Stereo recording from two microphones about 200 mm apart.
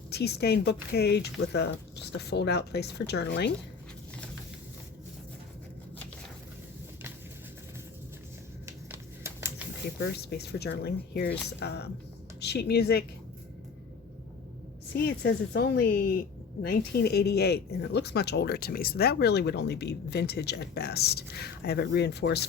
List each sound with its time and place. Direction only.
0.1 s speech: 55° left (ahead or behind)
8.6 s a sound: 10° right (ahead or behind)
10.2 s speech: 55° left (ahead or behind)
14.9 s speech: 55° left (ahead or behind)